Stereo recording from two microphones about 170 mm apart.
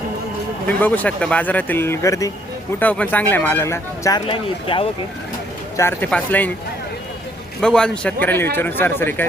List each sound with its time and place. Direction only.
0.8 s speech: 10° left (ahead or behind)
2.7 s speech: 10° left (ahead or behind); by 4.9 s 30° left (ahead or behind)
5.7 s speech: 15° left (ahead or behind)
7.6 s a man's voice: 5° left (ahead or behind)